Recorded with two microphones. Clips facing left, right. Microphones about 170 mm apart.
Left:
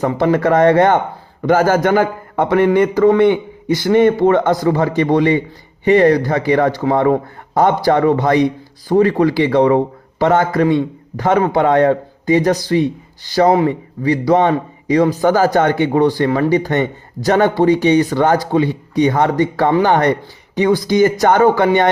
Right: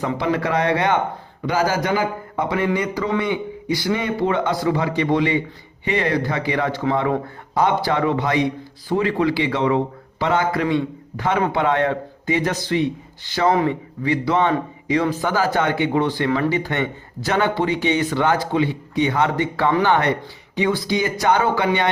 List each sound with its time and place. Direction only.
0.0 s a man's voice: 45° left (ahead or behind)